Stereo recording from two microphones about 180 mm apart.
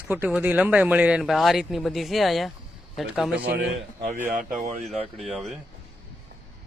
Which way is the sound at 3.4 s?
75° right (ahead or behind).